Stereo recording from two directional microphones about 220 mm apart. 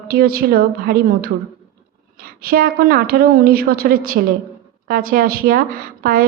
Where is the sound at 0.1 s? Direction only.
45° right (ahead or behind).